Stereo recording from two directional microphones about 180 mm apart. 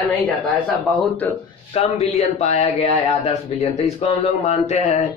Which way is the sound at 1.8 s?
40° left (ahead or behind).